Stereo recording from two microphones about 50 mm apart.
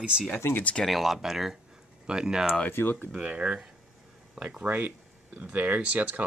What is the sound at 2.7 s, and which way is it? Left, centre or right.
Speech, left.